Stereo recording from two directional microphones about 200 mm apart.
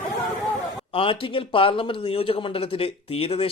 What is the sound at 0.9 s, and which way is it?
Speech, 25° left (ahead or behind).